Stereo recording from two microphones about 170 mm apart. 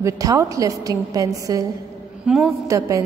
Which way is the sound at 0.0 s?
20° right (ahead or behind).